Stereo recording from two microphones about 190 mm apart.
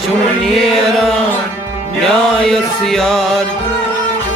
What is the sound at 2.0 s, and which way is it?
Music, 5° left (ahead or behind).